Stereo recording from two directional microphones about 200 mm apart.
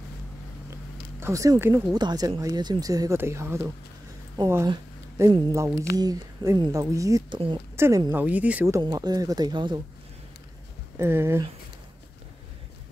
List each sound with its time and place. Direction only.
1.2 s speech: 15° right (ahead or behind)
11.0 s speech: 10° right (ahead or behind)